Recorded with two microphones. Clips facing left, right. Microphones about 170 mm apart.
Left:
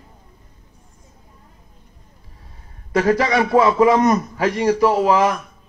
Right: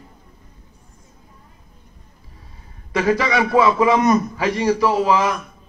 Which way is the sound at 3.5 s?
30° left (ahead or behind).